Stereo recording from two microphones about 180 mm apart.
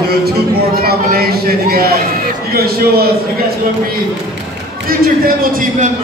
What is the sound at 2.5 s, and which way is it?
A man's voice, 60° right (ahead or behind).